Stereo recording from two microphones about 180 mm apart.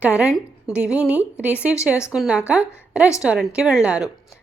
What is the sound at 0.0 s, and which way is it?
A woman's voice, 10° right (ahead or behind).